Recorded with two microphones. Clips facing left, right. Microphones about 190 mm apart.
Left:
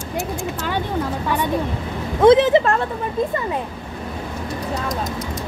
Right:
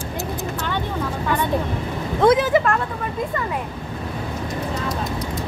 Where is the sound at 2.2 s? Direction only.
25° left (ahead or behind).